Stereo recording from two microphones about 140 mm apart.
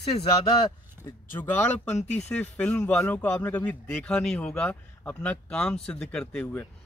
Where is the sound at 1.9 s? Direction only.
55° left (ahead or behind).